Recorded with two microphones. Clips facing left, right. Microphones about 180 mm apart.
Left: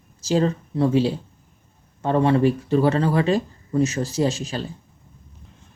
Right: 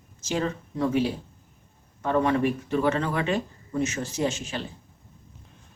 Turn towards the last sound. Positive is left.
turn(degrees=35)  # may be behind; listen again after turning